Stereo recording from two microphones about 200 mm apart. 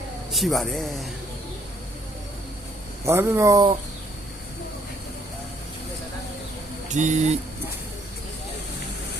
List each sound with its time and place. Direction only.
0.3 s speech: centre (ahead or behind)
3.1 s speech: 15° right (ahead or behind)
6.8 s speech: 35° right (ahead or behind)